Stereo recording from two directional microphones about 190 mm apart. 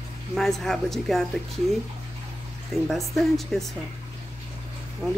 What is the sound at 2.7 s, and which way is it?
Speech, centre (ahead or behind).